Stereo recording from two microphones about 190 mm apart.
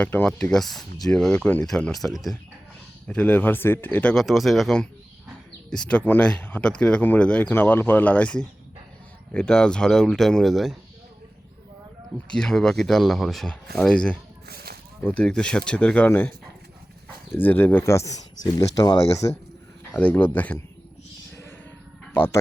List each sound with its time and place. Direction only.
0.0 s speech: 10° left (ahead or behind)
12.3 s speech: 5° left (ahead or behind)
14.4 s a sound: 55° right (ahead or behind)
15.0 s speech: 5° left (ahead or behind)
17.3 s speech: 10° left (ahead or behind)
22.1 s speech: 10° left (ahead or behind)